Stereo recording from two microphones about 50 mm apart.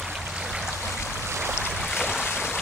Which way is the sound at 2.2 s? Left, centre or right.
Left.